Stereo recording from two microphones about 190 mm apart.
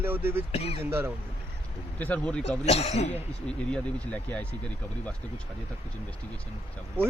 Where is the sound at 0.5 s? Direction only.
30° left (ahead or behind).